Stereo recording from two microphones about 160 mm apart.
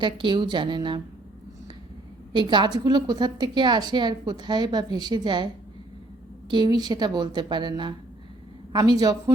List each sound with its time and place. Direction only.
0.0 s a woman's voice: 30° right (ahead or behind)
2.3 s a woman's voice: 30° right (ahead or behind)
6.5 s a woman's voice: 25° right (ahead or behind)